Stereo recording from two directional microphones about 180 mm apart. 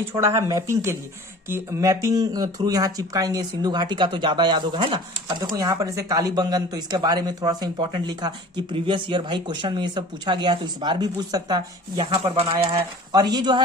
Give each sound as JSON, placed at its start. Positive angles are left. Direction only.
{"t": 0.0, "sound": "speech", "side_deg": -15}